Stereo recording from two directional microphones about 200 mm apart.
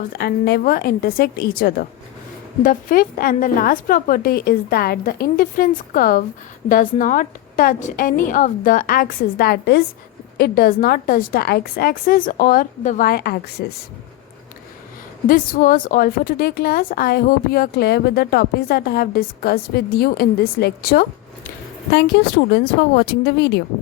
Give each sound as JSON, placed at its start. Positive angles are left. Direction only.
{"t": 0.1, "sound": "a woman's voice", "side_deg": 50}
{"t": 15.3, "sound": "a woman's voice", "side_deg": 45}